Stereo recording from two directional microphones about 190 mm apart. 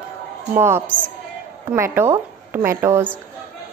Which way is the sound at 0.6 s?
10° right (ahead or behind).